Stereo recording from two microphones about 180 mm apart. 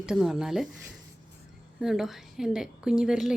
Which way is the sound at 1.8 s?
Centre (ahead or behind).